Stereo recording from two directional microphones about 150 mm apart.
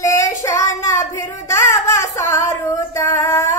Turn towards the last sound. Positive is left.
turn(degrees=20)  # may be behind; listen again after turning